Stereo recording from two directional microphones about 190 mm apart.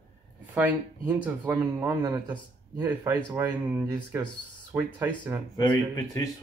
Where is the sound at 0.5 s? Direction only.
5° right (ahead or behind).